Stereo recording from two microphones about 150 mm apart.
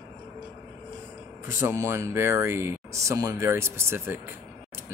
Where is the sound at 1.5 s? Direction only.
15° right (ahead or behind).